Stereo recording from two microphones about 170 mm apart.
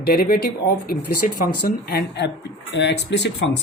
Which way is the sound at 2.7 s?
90° left.